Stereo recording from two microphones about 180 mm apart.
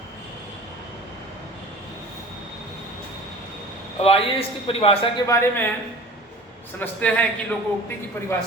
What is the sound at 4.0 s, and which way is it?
A man's voice, 30° left (ahead or behind).